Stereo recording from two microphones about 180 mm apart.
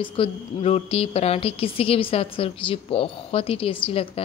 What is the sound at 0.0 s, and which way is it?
A woman's voice, 30° left (ahead or behind).